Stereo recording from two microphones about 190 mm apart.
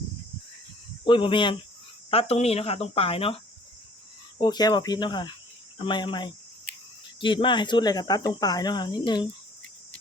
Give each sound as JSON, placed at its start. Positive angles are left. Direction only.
{"t": 1.0, "sound": "speech", "side_deg": 25}